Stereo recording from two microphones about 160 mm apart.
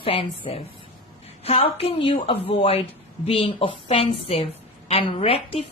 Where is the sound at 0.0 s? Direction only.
35° left (ahead or behind).